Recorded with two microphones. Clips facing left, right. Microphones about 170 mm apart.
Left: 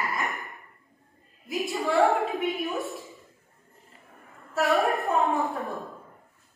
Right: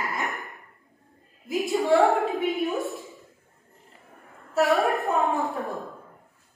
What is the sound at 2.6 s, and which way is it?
Speech, 20° right (ahead or behind).